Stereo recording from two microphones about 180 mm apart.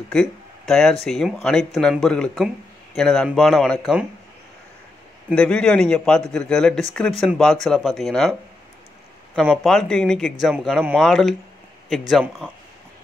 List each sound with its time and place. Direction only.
0.1 s speech: centre (ahead or behind)
5.3 s speech: 5° left (ahead or behind)